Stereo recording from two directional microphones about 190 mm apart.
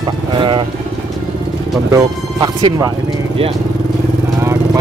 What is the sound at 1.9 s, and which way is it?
Speech, 20° right (ahead or behind).